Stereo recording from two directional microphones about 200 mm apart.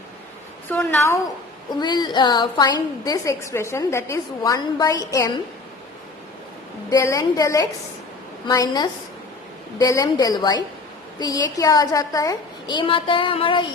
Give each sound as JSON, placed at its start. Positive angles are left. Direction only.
{"t": 0.7, "sound": "a woman's voice", "side_deg": 10}
{"t": 1.8, "sound": "a woman's voice", "side_deg": 20}
{"t": 6.9, "sound": "a woman's voice", "side_deg": 15}